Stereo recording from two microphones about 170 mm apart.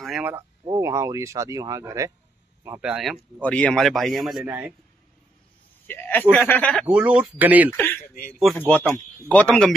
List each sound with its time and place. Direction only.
0.0 s a sound: centre (ahead or behind)
0.7 s speech: 20° right (ahead or behind)
2.8 s a man's voice: 5° right (ahead or behind)
4.5 s speech: 10° right (ahead or behind)
5.9 s a man's voice: 10° left (ahead or behind)
6.9 s speech: 5° right (ahead or behind)
7.7 s a man's voice: 10° left (ahead or behind)
8.1 s a man's voice: 55° left (ahead or behind)
8.5 s a man's voice: 5° left (ahead or behind)